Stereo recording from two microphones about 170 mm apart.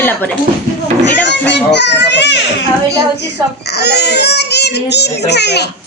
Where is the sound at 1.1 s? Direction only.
90° left.